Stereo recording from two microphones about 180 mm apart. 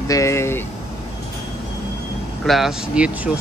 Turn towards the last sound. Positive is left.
turn(degrees=-5)  # may be behind; listen again after turning